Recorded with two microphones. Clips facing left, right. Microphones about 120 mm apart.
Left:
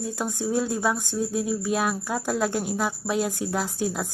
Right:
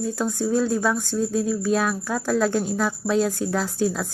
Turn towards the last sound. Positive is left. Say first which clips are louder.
# right 4 dB
turn(degrees=15)  # may be behind; listen again after turning